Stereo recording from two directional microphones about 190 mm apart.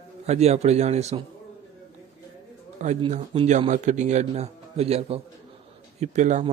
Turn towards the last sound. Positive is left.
turn(degrees=-40)  # may be behind; listen again after turning